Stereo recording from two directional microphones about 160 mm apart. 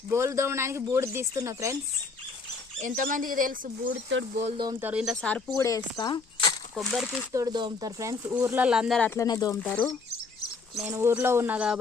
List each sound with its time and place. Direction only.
0.1 s speech: 15° right (ahead or behind)
2.8 s speech: 55° right (ahead or behind)
4.5 s speech: 30° right (ahead or behind)
4.8 s speech: 10° right (ahead or behind)
5.2 s speech: 10° left (ahead or behind)
5.6 s speech: 25° left (ahead or behind)
6.7 s speech: centre (ahead or behind)
7.3 s speech: 25° right (ahead or behind); by 9.0 s 5° right (ahead or behind)
9.0 s speech: 10° left (ahead or behind)
9.2 s speech: 25° left (ahead or behind)
9.6 s speech: 5° left (ahead or behind)
10.8 s speech: 15° right (ahead or behind)